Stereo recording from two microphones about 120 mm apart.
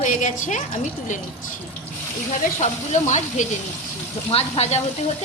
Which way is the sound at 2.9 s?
80° left.